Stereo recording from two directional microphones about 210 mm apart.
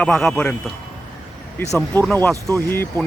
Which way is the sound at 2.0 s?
10° left (ahead or behind).